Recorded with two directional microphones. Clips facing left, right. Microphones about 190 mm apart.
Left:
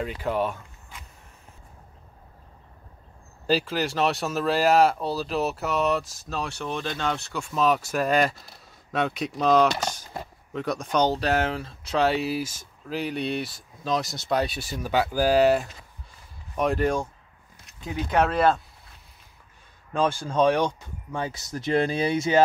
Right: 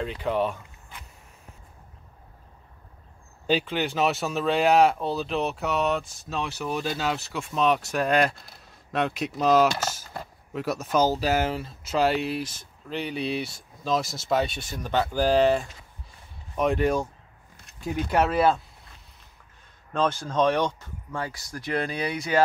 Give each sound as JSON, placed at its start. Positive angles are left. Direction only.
{"t": 0.0, "sound": "speech", "side_deg": 5}
{"t": 3.4, "sound": "speech", "side_deg": 0}
{"t": 18.1, "sound": "speech", "side_deg": -5}
{"t": 19.9, "sound": "speech", "side_deg": 10}